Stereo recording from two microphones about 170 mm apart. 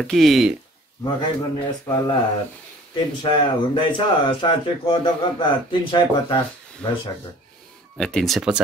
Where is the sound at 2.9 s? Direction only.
25° left (ahead or behind).